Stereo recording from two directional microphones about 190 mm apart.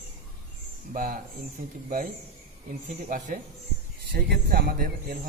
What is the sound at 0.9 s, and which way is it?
Speech, 45° right (ahead or behind).